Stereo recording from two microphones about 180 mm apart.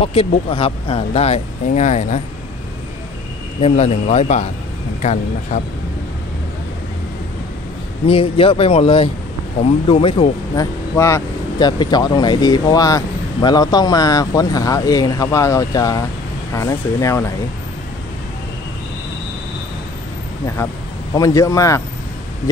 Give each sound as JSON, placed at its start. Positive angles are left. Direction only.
{"t": 0.0, "sound": "speech", "side_deg": 30}
{"t": 3.6, "sound": "speech", "side_deg": 35}
{"t": 8.1, "sound": "speech", "side_deg": 30}
{"t": 10.5, "sound": "a man's voice", "side_deg": 15}
{"t": 21.1, "sound": "a man's voice", "side_deg": 20}